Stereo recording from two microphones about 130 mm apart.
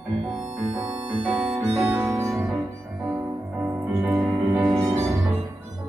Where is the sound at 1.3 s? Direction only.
5° right (ahead or behind).